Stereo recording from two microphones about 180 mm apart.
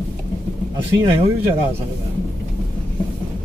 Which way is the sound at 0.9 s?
25° right (ahead or behind).